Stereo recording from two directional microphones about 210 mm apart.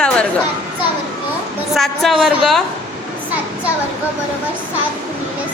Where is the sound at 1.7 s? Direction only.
Centre (ahead or behind).